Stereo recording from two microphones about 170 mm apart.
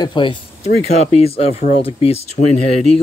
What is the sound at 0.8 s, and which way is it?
Speech, 40° left (ahead or behind).